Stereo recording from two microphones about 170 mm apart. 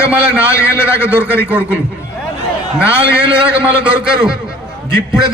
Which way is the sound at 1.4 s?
10° right (ahead or behind).